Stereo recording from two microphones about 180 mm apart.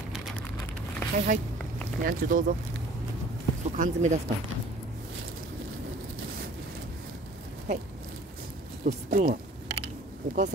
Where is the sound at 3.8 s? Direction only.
40° right (ahead or behind).